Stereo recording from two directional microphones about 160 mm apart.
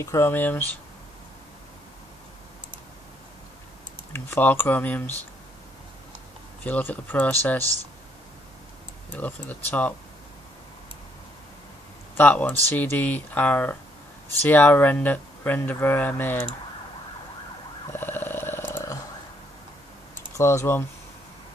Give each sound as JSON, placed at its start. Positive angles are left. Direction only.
{"t": 0.0, "sound": "speech", "side_deg": 15}
{"t": 4.1, "sound": "speech", "side_deg": 10}
{"t": 6.6, "sound": "speech", "side_deg": 10}
{"t": 9.1, "sound": "speech", "side_deg": 10}
{"t": 12.2, "sound": "speech", "side_deg": 10}
{"t": 17.9, "sound": "a sound", "side_deg": 15}
{"t": 20.3, "sound": "speech", "side_deg": 15}